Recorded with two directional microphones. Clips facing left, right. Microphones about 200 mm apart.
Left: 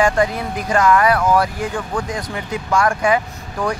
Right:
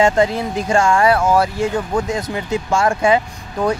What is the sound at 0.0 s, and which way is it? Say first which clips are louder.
Speech: right 2 dB; 25° right (ahead or behind).